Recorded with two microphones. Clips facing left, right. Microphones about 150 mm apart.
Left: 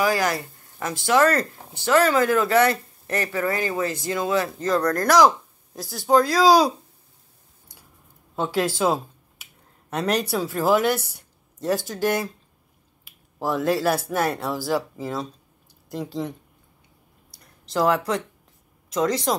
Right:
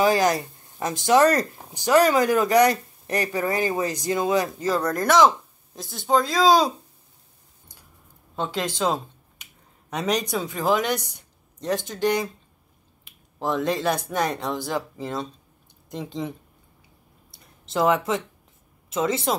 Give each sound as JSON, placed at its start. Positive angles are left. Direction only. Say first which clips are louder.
{"t": 0.0, "sound": "speech", "louder": "right 3 dB", "side_deg": -20}
{"t": 8.4, "sound": "speech", "louder": "left 3 dB", "side_deg": 10}
{"t": 17.4, "sound": "a sound", "louder": "even", "side_deg": 0}
{"t": 18.9, "sound": "speech", "louder": "left 1 dB", "side_deg": 0}